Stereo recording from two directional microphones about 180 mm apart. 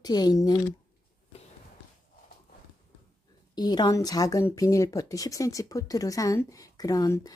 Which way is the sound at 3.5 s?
25° left (ahead or behind).